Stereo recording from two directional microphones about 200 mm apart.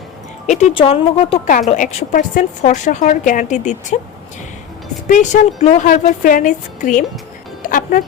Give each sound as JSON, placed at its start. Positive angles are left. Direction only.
{"t": 0.6, "sound": "a woman's voice", "side_deg": 30}
{"t": 1.7, "sound": "a woman's voice", "side_deg": 40}
{"t": 5.0, "sound": "a woman's voice", "side_deg": 40}
{"t": 7.6, "sound": "music", "side_deg": 45}